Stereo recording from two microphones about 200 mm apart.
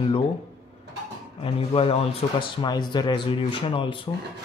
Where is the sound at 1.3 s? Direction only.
25° left (ahead or behind).